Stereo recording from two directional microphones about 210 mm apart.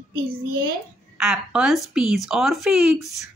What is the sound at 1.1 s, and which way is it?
Speech, 5° right (ahead or behind).